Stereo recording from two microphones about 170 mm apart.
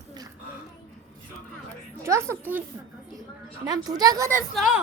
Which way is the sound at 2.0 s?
15° right (ahead or behind).